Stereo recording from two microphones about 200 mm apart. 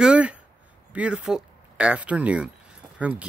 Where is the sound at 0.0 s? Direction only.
5° right (ahead or behind).